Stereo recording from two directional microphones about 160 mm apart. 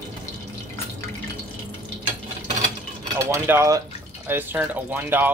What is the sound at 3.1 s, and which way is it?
Speech, 20° right (ahead or behind).